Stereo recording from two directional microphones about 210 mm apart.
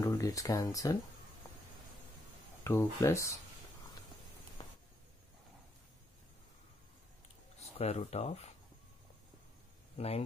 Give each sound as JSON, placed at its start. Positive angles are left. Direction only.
{"t": 0.0, "sound": "speech", "side_deg": 15}
{"t": 2.6, "sound": "speech", "side_deg": 15}
{"t": 7.7, "sound": "speech", "side_deg": 30}
{"t": 9.9, "sound": "speech", "side_deg": 30}